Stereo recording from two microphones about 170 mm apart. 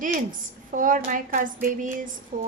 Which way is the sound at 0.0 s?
50° right (ahead or behind).